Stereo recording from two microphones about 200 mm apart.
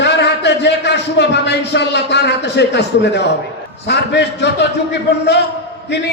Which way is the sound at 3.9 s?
60° left (ahead or behind).